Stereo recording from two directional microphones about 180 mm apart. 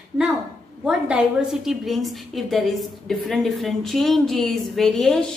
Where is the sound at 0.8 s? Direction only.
5° right (ahead or behind).